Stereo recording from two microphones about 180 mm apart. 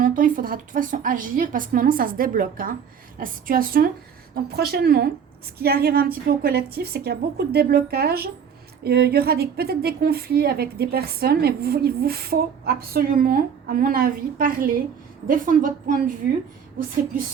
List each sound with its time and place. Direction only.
0.0 s a woman's voice: 50° right (ahead or behind)